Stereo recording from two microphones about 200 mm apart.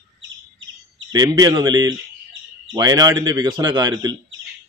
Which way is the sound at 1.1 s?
20° right (ahead or behind).